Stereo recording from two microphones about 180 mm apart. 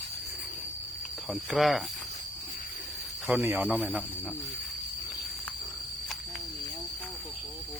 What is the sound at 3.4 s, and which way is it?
Speech, 10° right (ahead or behind).